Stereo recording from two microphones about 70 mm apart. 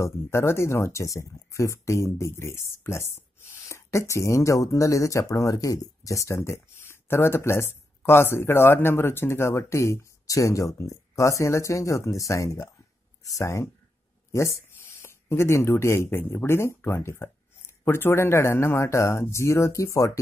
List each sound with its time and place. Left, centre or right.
0.0 s speech: left